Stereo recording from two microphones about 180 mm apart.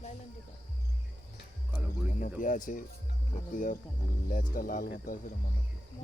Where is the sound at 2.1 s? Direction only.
45° left (ahead or behind).